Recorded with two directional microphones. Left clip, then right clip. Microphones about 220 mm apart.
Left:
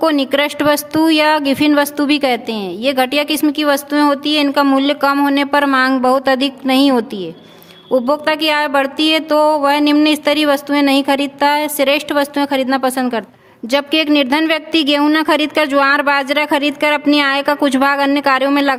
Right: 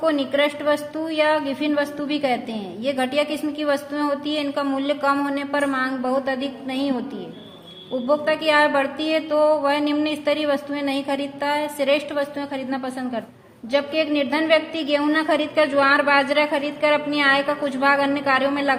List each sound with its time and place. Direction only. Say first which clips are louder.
0.0 s speech: left 6 dB; 45° left (ahead or behind)
8.0 s speech: even; 45° left (ahead or behind)